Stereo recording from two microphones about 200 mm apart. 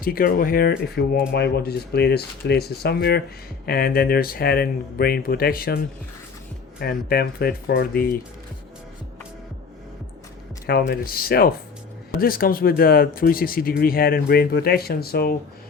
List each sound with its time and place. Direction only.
0.0 s speech: 45° left (ahead or behind)
10.7 s speech: 50° left (ahead or behind)